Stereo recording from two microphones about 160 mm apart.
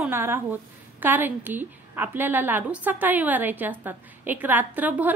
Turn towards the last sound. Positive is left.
turn(degrees=-10)  # may be behind; listen again after turning